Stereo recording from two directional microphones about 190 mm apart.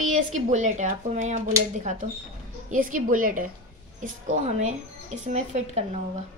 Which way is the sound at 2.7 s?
45° right (ahead or behind).